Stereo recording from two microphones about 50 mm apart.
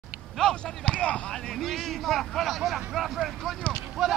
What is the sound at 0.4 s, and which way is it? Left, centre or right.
Speech, centre.